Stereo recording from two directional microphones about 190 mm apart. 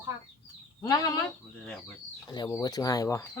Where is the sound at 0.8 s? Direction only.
20° left (ahead or behind).